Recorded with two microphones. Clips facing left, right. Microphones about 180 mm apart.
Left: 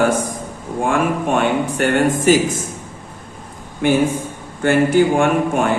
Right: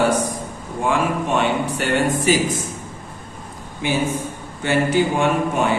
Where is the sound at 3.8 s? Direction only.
55° left (ahead or behind).